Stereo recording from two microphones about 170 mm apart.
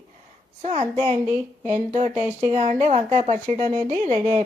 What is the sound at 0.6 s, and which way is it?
A woman's voice, 40° right (ahead or behind).